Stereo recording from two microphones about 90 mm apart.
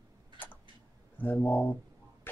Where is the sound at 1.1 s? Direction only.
20° left (ahead or behind).